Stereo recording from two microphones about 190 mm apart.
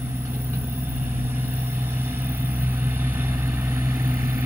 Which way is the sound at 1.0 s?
10° right (ahead or behind).